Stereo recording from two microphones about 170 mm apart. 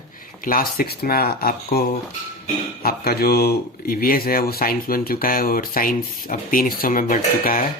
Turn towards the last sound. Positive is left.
turn(degrees=55)  # may be behind; listen again after turning